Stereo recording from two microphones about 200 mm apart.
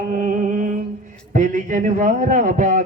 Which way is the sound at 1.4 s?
40° right (ahead or behind).